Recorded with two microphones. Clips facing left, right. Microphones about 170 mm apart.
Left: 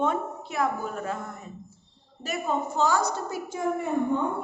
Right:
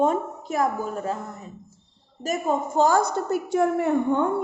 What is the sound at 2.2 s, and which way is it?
A woman's voice, 45° right (ahead or behind).